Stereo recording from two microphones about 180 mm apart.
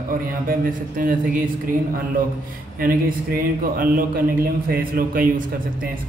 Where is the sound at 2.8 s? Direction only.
55° right (ahead or behind).